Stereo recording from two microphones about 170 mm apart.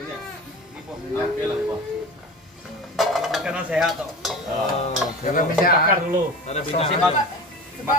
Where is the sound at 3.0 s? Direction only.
Centre (ahead or behind).